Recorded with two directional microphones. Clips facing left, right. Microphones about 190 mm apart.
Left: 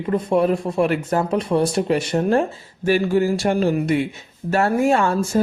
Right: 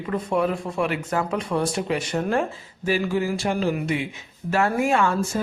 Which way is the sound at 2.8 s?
60° left (ahead or behind).